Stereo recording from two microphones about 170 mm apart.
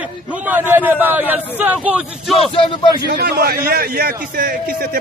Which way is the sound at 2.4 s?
30° left (ahead or behind).